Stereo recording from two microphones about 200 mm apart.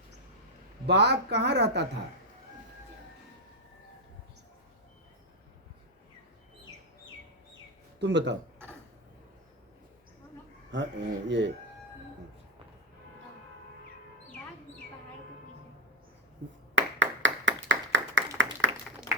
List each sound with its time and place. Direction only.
0.9 s speech: 55° right (ahead or behind)
7.9 s speech: 60° right (ahead or behind)
10.7 s speech: 60° right (ahead or behind)
16.7 s clapping: 70° right (ahead or behind)